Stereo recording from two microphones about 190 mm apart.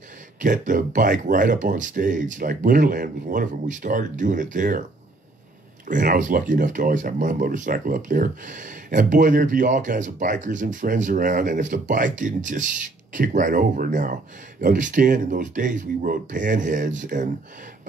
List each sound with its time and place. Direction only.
0.4 s speech: 45° right (ahead or behind)
5.9 s speech: 40° right (ahead or behind)